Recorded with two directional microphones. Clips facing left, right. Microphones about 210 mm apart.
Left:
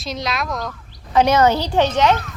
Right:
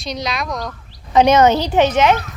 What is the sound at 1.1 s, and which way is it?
A woman's voice, 20° right (ahead or behind).